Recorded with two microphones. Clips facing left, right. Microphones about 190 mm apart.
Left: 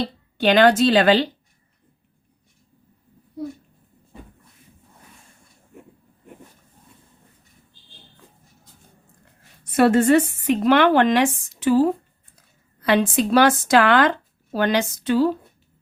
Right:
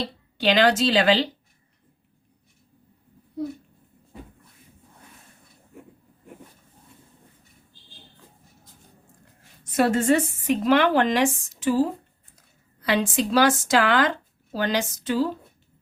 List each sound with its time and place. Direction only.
0.3 s speech: 55° left (ahead or behind)
9.7 s a woman's voice: 65° left (ahead or behind)